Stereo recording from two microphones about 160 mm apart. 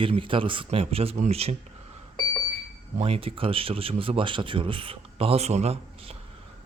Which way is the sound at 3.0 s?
35° right (ahead or behind).